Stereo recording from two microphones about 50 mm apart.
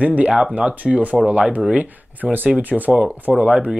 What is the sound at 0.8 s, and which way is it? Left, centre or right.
Speech, right.